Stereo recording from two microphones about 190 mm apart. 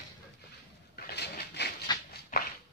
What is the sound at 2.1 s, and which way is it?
Walk, 50° left (ahead or behind).